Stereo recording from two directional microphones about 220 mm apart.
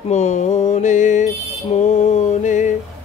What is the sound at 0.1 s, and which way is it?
Mantra, 30° left (ahead or behind).